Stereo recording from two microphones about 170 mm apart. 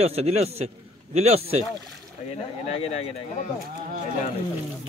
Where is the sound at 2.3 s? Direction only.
35° left (ahead or behind).